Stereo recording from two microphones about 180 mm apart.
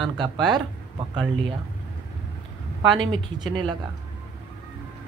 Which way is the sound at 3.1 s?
25° right (ahead or behind).